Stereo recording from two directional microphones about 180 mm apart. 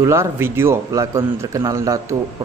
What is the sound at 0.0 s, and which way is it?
A man's voice, 15° right (ahead or behind).